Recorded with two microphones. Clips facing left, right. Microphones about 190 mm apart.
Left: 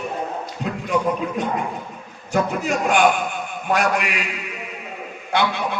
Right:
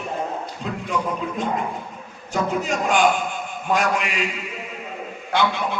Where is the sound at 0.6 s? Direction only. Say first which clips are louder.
Left 4 dB; 60° left (ahead or behind).